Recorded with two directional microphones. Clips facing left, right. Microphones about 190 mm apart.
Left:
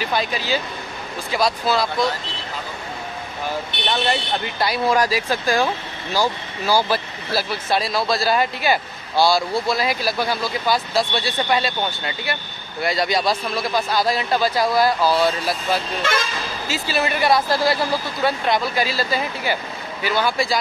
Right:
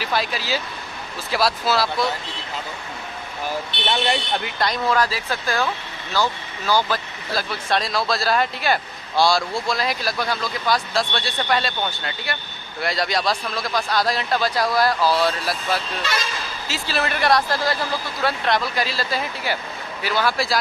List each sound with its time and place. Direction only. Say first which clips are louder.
0.0 s speech: left 2 dB; centre (ahead or behind)
4.6 s speech: left 2 dB; 10° left (ahead or behind)
12.8 s speech: left 2 dB; centre (ahead or behind)
16.0 s speech: left 4 dB; 50° left (ahead or behind)
16.6 s speech: left 2 dB; centre (ahead or behind)